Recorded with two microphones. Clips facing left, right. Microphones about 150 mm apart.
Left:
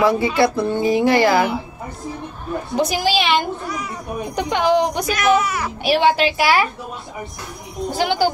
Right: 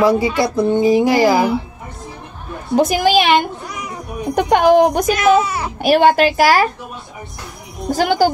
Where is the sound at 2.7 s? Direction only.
50° right (ahead or behind).